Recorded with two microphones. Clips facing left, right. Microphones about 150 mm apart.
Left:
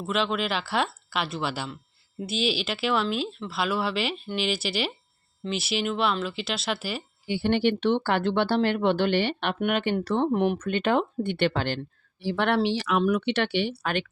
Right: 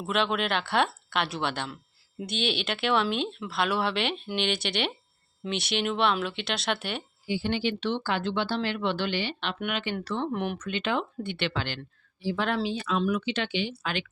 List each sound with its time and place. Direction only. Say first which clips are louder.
0.0 s speech: left 1 dB; centre (ahead or behind)
7.3 s speech: left 5 dB; 60° left (ahead or behind)
10.3 s speech: left 7 dB; 35° left (ahead or behind)
10.6 s speech: left 5 dB; 55° left (ahead or behind)
12.2 s speech: left 4 dB; 65° left (ahead or behind)